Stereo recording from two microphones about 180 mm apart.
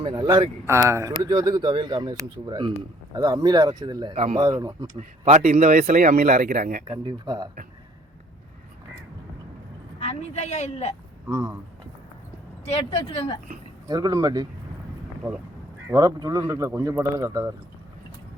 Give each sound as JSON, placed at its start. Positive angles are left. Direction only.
{"t": 0.0, "sound": "speech", "side_deg": -25}
{"t": 4.9, "sound": "speech", "side_deg": -40}
{"t": 6.9, "sound": "speech", "side_deg": -25}
{"t": 10.0, "sound": "a woman's voice", "side_deg": 40}
{"t": 11.3, "sound": "speech", "side_deg": -15}
{"t": 12.6, "sound": "speech", "side_deg": 35}
{"t": 13.8, "sound": "speech", "side_deg": -20}
{"t": 15.9, "sound": "speech", "side_deg": -20}